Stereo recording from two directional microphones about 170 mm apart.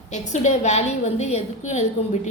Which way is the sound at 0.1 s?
45° left (ahead or behind).